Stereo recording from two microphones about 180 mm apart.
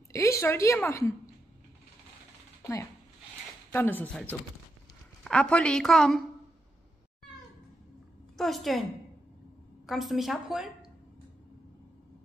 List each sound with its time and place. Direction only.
0.1 s a woman's voice: 15° left (ahead or behind)
3.7 s a woman's voice: 10° left (ahead or behind)
8.4 s a woman's voice: centre (ahead or behind)
9.8 s a woman's voice: centre (ahead or behind)